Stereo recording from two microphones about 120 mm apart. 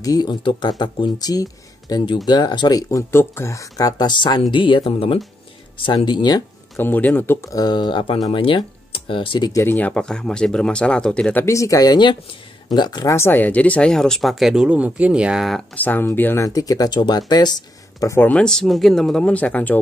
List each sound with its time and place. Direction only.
0.0 s speech: 35° left (ahead or behind)
6.8 s speech: 15° left (ahead or behind)
7.5 s speech: 35° left (ahead or behind)
9.5 s speech: 20° left (ahead or behind)
11.4 s speech: 25° left (ahead or behind)
13.1 s speech: 20° left (ahead or behind); by 15.6 s centre (ahead or behind)
15.7 s speech: 15° left (ahead or behind)
16.4 s speech: 30° left (ahead or behind)
18.1 s speech: 15° left (ahead or behind)